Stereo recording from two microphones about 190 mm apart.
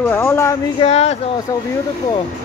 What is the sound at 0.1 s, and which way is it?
Speech, 10° left (ahead or behind).